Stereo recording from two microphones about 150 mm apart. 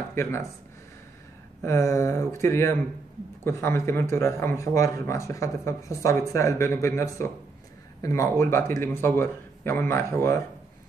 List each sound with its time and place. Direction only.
0.1 s speech: 15° left (ahead or behind)
1.6 s a man's voice: 20° left (ahead or behind)